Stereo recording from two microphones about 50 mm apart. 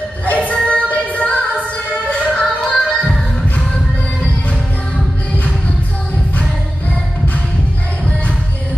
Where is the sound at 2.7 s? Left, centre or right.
Left.